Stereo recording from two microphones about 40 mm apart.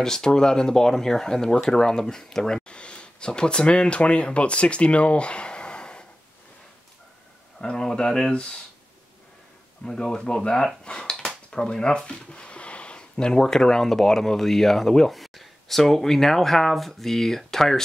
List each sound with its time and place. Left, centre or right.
0.0 s speech: centre
2.7 s speech: left
7.6 s speech: centre
9.8 s speech: centre